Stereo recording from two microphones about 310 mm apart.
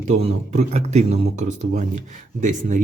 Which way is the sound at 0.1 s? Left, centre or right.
Right.